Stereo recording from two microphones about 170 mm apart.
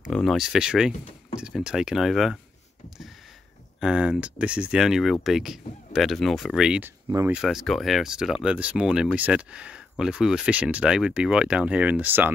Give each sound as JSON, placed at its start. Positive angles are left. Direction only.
{"t": 0.1, "sound": "speech", "side_deg": 0}
{"t": 3.8, "sound": "speech", "side_deg": -5}
{"t": 7.1, "sound": "speech", "side_deg": -20}
{"t": 7.3, "sound": "speech", "side_deg": 0}